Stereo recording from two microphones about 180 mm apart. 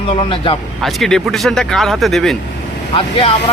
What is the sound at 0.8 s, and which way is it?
Speech, centre (ahead or behind).